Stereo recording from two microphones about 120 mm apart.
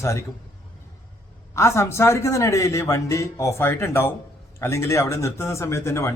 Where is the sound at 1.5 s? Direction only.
20° left (ahead or behind).